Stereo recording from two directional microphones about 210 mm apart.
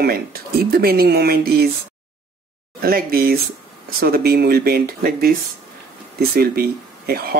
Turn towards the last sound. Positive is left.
turn(degrees=-45)  # may be behind; listen again after turning